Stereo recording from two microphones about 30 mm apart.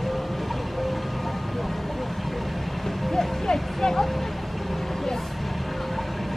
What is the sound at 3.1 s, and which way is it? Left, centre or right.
Vehicle, centre.